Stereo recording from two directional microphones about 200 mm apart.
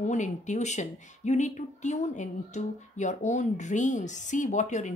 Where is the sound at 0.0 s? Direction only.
35° left (ahead or behind).